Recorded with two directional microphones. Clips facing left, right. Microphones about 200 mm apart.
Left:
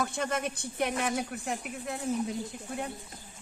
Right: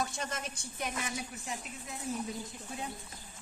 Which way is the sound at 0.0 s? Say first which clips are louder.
Left 6 dB; 60° left (ahead or behind).